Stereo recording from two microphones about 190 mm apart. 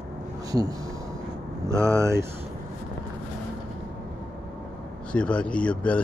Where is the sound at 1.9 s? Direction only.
15° right (ahead or behind).